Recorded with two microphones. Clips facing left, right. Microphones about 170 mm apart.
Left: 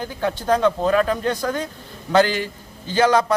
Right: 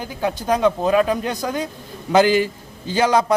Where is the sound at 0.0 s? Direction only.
10° right (ahead or behind).